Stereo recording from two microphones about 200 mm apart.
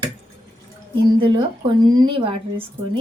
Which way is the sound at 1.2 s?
25° right (ahead or behind).